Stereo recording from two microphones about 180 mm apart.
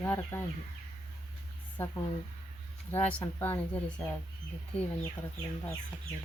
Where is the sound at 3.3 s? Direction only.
10° left (ahead or behind).